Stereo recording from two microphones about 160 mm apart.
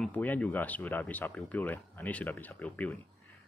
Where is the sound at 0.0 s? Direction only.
10° left (ahead or behind).